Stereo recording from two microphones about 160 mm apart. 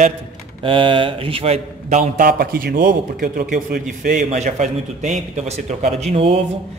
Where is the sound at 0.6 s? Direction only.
35° right (ahead or behind).